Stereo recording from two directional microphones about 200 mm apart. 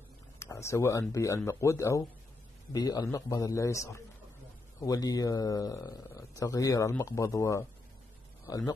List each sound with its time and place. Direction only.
0.4 s speech: 15° left (ahead or behind)